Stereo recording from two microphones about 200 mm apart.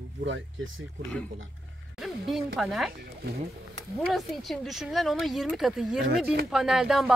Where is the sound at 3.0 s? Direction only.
50° right (ahead or behind).